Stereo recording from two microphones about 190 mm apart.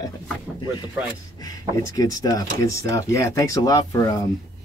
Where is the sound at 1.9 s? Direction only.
20° left (ahead or behind).